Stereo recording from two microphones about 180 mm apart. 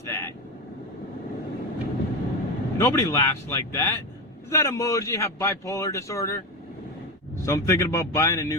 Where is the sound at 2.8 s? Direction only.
15° left (ahead or behind).